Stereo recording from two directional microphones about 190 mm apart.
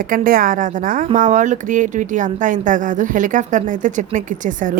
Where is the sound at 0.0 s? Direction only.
50° right (ahead or behind).